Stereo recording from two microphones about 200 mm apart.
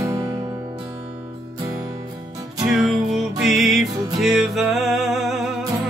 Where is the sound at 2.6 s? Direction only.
Centre (ahead or behind).